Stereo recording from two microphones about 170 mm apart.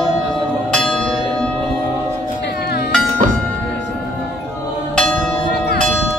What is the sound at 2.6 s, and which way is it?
Music, 65° left (ahead or behind).